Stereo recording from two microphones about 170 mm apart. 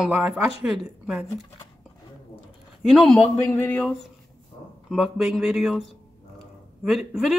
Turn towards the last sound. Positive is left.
turn(degrees=0)  # may be behind; listen again after turning